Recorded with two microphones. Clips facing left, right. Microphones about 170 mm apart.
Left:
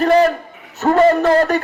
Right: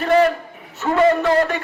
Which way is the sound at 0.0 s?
40° left (ahead or behind).